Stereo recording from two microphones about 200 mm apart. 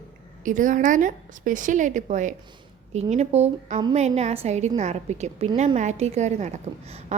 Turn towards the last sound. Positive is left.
turn(degrees=-35)  # may be behind; listen again after turning